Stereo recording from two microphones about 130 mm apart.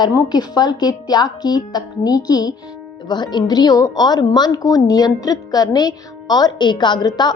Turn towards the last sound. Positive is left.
turn(degrees=35)  # may be behind; listen again after turning